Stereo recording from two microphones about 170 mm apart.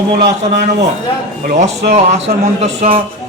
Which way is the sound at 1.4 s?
50° right (ahead or behind).